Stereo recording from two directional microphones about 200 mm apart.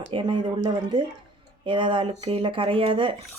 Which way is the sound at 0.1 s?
25° right (ahead or behind).